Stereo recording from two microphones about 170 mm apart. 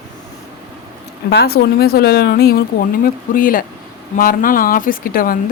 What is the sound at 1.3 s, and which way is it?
Speech, 70° left (ahead or behind).